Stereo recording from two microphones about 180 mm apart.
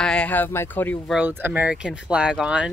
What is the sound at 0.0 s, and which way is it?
Speech, 5° left (ahead or behind).